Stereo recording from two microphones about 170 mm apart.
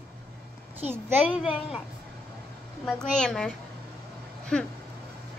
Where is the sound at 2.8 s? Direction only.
5° left (ahead or behind).